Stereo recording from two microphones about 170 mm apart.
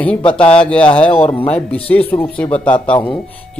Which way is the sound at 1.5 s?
5° left (ahead or behind).